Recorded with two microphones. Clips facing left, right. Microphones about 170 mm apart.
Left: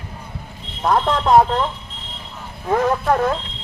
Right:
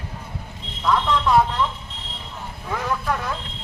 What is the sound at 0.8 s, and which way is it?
Speech, 50° left (ahead or behind).